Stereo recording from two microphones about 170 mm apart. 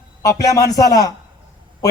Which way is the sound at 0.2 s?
20° left (ahead or behind).